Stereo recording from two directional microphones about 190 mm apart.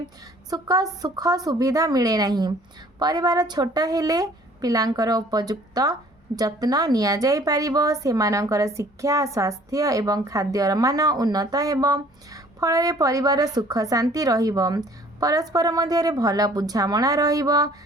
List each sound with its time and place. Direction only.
0.5 s a woman's voice: 20° right (ahead or behind)